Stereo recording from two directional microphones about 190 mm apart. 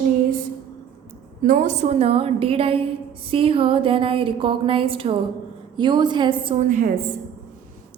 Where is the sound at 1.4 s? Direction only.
45° right (ahead or behind); by 6.7 s 25° right (ahead or behind).